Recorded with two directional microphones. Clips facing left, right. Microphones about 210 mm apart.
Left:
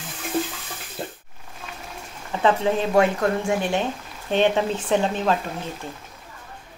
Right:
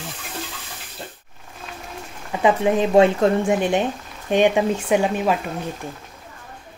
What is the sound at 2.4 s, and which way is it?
Speech, 15° right (ahead or behind).